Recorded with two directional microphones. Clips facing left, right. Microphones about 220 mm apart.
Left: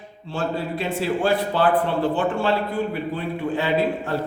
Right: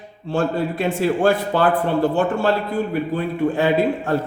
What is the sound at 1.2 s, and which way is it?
Speech, 45° right (ahead or behind).